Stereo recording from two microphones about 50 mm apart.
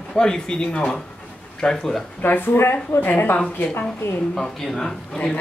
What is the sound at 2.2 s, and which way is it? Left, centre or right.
Speech, left.